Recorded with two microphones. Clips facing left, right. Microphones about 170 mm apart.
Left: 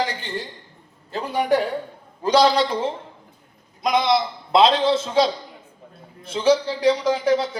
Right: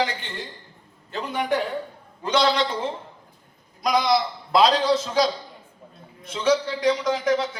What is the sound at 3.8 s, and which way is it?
A man's voice, 25° left (ahead or behind).